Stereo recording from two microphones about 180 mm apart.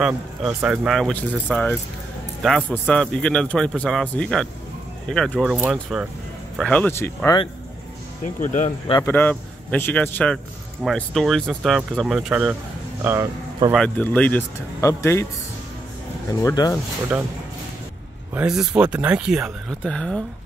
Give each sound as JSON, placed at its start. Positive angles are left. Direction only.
{"t": 0.0, "sound": "a man's voice", "side_deg": -5}
{"t": 6.6, "sound": "speech", "side_deg": 10}
{"t": 8.4, "sound": "speech", "side_deg": 40}
{"t": 9.0, "sound": "a man's voice", "side_deg": 10}
{"t": 13.0, "sound": "speech", "side_deg": -15}
{"t": 13.7, "sound": "speech", "side_deg": 5}
{"t": 16.4, "sound": "speech", "side_deg": 20}
{"t": 17.1, "sound": "a man's voice", "side_deg": -5}
{"t": 18.3, "sound": "a man's voice", "side_deg": -5}